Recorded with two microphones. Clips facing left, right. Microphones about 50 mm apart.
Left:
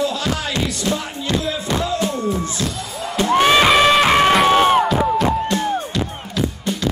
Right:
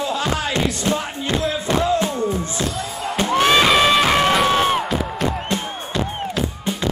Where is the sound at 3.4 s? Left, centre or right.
Centre.